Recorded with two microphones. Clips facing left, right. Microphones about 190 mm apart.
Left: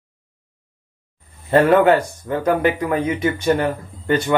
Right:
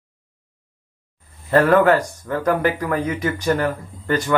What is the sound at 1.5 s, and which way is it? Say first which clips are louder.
Speech: left 1 dB; 20° left (ahead or behind).